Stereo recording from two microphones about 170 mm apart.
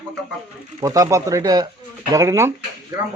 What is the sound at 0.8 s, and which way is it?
Speech, 20° right (ahead or behind).